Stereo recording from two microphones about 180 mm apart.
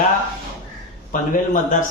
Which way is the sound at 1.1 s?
45° left (ahead or behind).